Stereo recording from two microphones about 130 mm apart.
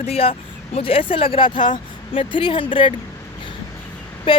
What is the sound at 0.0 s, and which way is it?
Speech, 50° left (ahead or behind).